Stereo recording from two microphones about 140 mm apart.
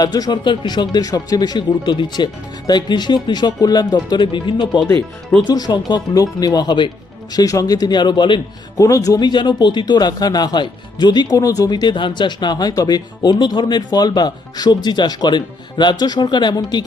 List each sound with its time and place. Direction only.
0.0 s speech: 30° left (ahead or behind)